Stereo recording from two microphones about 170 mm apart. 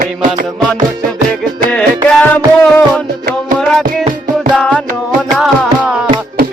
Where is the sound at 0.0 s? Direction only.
50° right (ahead or behind).